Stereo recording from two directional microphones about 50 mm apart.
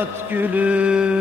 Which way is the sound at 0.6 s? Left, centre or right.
Right.